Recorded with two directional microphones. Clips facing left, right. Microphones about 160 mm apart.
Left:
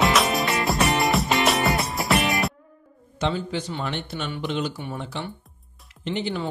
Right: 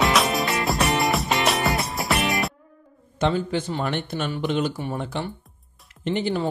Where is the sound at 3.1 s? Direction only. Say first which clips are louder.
Right 3 dB; 50° right (ahead or behind).